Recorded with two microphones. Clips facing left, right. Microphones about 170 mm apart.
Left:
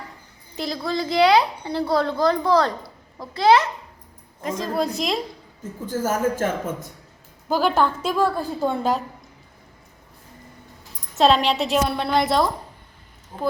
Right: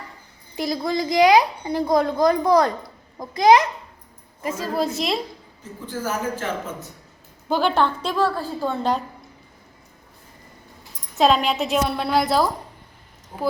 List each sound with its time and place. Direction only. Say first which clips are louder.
0.5 s a woman's voice: right 2 dB; 10° right (ahead or behind)
5.8 s a man's voice: left 4 dB; 45° left (ahead or behind)
7.4 s a woman's voice: even; 5° left (ahead or behind)
11.1 s a woman's voice: left 1 dB; centre (ahead or behind)